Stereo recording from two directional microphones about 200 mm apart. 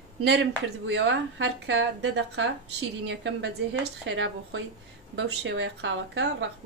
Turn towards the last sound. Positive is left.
turn(degrees=-65)  # may be behind; listen again after turning